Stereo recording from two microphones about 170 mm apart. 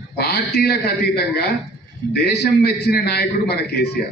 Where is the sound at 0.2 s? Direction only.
70° left (ahead or behind).